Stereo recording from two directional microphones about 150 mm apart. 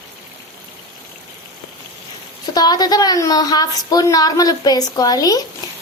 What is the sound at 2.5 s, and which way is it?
A woman's voice, 25° left (ahead or behind).